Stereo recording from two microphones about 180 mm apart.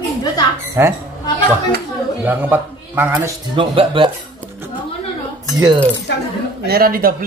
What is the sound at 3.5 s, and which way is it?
Speech, 30° right (ahead or behind).